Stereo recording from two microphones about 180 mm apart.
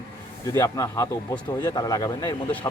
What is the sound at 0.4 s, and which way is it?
Speech, 15° left (ahead or behind).